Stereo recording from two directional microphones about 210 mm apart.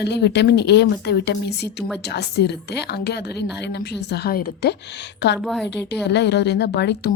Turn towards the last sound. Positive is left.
turn(degrees=55)  # may be behind; listen again after turning